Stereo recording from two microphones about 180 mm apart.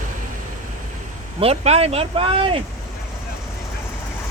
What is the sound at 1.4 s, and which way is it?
Speech, 35° right (ahead or behind).